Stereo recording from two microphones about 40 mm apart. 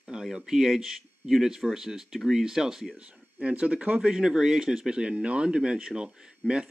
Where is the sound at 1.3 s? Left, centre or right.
Centre.